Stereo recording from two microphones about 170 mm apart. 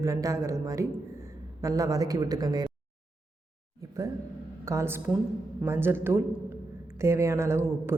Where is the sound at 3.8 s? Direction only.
20° right (ahead or behind).